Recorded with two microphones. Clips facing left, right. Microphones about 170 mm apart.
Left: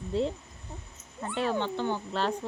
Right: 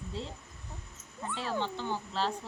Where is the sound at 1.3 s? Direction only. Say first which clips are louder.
Left 5 dB; 60° left (ahead or behind).